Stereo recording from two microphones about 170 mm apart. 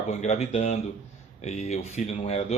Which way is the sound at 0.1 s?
40° left (ahead or behind).